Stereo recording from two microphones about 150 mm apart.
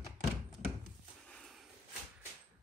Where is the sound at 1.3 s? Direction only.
Centre (ahead or behind).